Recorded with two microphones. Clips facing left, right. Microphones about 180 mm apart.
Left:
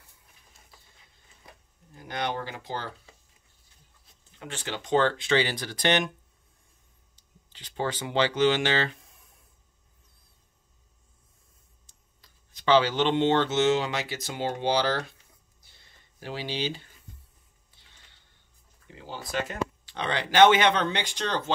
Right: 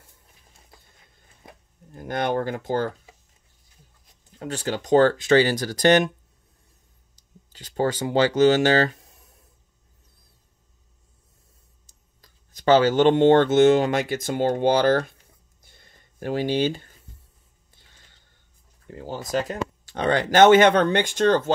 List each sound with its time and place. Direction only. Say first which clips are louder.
2.0 s speech: right 7 dB; 50° right (ahead or behind)
4.3 s speech: right 8 dB; 40° right (ahead or behind)
7.2 s speech: right 7 dB; 45° right (ahead or behind)
11.8 s speech: right 4 dB; 45° right (ahead or behind)
15.6 s a sound: right 8 dB; 50° right (ahead or behind)
17.8 s music: right 3 dB; 45° right (ahead or behind)
18.9 s speech: right 8 dB; 45° right (ahead or behind)